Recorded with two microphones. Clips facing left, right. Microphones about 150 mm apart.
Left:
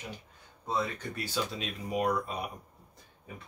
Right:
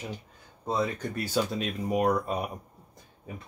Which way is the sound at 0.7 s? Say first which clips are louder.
Right 4 dB; 45° right (ahead or behind).